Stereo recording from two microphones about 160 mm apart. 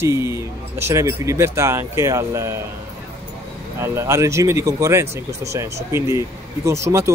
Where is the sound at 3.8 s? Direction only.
20° right (ahead or behind).